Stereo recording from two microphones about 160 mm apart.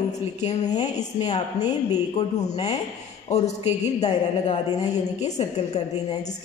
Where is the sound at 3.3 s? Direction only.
45° left (ahead or behind).